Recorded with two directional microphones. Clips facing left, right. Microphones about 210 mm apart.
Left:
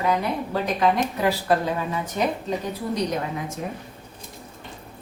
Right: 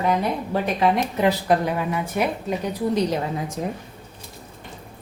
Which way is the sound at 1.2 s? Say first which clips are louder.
Right 3 dB; 20° right (ahead or behind).